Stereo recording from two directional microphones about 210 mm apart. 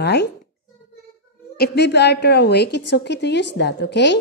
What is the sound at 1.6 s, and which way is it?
A woman's voice, 55° left (ahead or behind).